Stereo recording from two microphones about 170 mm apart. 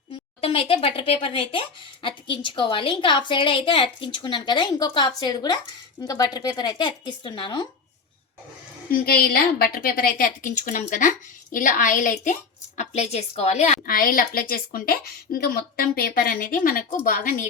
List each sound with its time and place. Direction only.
0.4 s speech: 35° left (ahead or behind)
8.9 s a woman's voice: 65° left (ahead or behind); by 13.7 s 40° left (ahead or behind)
13.8 s a woman's voice: 55° left (ahead or behind)